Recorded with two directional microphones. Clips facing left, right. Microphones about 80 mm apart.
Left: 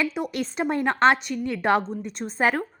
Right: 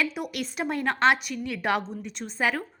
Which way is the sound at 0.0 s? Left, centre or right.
Left.